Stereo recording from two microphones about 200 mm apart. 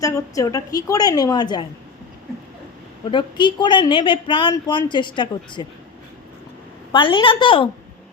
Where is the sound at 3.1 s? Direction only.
25° left (ahead or behind).